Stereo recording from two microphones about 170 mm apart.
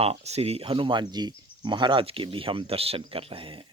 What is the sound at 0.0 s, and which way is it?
A man's voice, 40° right (ahead or behind).